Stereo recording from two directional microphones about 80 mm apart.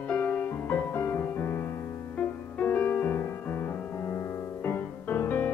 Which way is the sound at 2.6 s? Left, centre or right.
Left.